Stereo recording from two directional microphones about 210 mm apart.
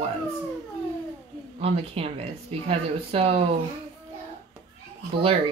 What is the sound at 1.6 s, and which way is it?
Speech, 25° right (ahead or behind).